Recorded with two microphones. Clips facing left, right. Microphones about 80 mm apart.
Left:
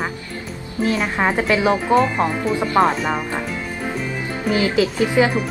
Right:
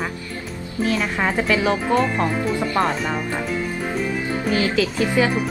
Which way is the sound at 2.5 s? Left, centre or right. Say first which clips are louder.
Left 8 dB; left.